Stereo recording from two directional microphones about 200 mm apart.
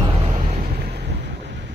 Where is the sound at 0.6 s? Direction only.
50° right (ahead or behind).